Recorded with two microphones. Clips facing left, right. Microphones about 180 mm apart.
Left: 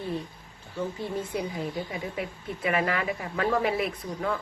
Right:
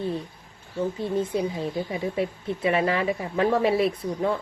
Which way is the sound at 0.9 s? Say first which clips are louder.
Right 6 dB; 20° right (ahead or behind).